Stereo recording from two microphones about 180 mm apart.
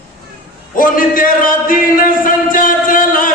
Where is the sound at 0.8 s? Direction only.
50° left (ahead or behind).